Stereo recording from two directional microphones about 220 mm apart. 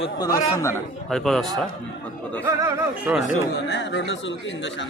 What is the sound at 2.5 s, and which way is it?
Speech, 15° right (ahead or behind).